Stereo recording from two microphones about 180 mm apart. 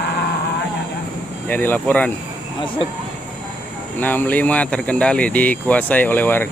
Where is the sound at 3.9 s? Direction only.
10° left (ahead or behind).